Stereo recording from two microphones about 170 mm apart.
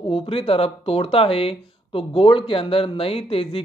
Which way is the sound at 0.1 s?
35° left (ahead or behind).